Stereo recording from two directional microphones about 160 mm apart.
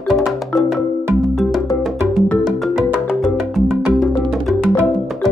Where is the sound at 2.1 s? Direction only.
Centre (ahead or behind).